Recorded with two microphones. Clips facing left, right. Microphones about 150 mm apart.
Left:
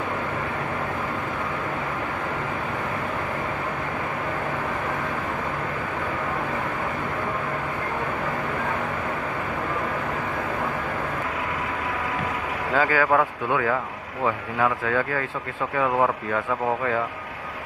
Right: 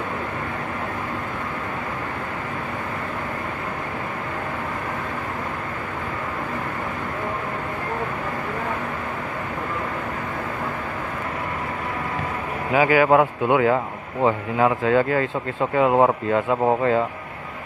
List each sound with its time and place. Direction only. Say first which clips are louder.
12.7 s speech: right 5 dB; 15° right (ahead or behind)